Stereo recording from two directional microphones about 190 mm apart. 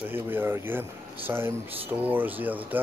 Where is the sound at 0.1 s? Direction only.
10° right (ahead or behind).